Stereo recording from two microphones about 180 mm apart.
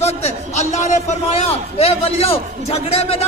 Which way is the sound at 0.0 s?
35° left (ahead or behind).